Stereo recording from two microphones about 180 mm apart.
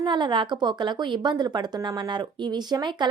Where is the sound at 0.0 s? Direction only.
25° right (ahead or behind).